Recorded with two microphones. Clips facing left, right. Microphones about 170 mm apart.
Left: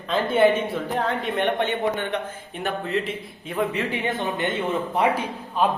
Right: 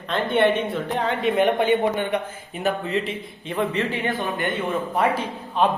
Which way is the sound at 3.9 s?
20° left (ahead or behind).